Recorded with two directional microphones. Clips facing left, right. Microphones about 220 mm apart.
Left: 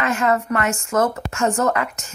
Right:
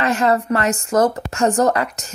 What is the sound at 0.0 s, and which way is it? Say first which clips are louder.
Speech: right 2 dB; 35° right (ahead or behind).